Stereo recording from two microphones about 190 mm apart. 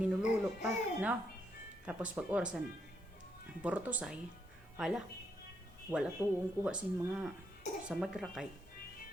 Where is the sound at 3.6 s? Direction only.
5° right (ahead or behind).